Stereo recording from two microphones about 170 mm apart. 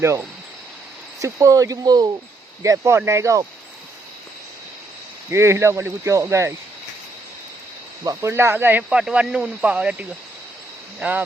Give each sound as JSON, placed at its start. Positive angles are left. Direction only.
{"t": 0.0, "sound": "speech", "side_deg": -15}
{"t": 5.3, "sound": "speech", "side_deg": -15}
{"t": 8.0, "sound": "speech", "side_deg": -15}